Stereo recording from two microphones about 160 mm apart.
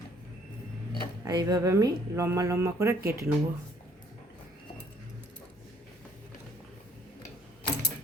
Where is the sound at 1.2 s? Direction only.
25° right (ahead or behind).